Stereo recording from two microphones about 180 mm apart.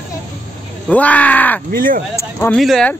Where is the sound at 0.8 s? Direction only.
10° left (ahead or behind).